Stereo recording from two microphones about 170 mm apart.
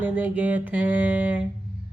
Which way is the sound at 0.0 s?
10° right (ahead or behind).